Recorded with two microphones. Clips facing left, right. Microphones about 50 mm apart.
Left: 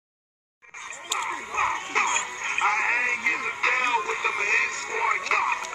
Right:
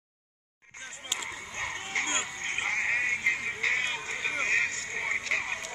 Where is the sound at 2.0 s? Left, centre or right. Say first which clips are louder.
Left 7 dB; left.